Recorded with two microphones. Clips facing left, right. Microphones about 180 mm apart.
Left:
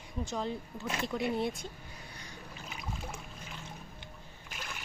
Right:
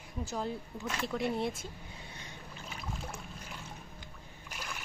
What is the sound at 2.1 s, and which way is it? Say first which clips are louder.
Boat: right 1 dB; 25° right (ahead or behind).